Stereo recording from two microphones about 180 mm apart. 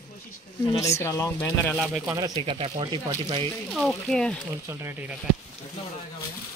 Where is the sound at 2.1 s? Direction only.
25° right (ahead or behind).